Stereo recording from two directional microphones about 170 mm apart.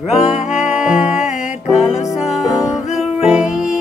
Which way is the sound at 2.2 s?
Centre (ahead or behind).